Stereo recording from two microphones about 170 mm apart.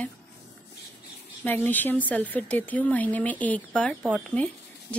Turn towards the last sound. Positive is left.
turn(degrees=5)  # may be behind; listen again after turning